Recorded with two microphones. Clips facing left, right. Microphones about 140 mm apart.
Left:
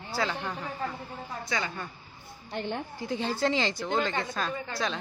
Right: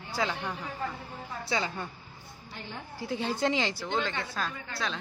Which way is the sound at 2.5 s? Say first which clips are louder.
Left 10 dB; 65° left (ahead or behind).